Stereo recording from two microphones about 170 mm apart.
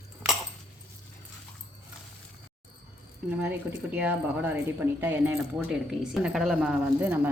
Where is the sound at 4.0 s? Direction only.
10° right (ahead or behind).